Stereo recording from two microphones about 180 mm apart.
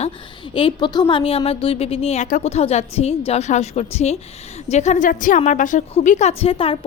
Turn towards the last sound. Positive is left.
turn(degrees=30)  # may be behind; listen again after turning